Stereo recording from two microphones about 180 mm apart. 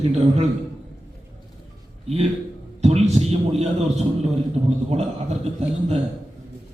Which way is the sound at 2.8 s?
35° right (ahead or behind).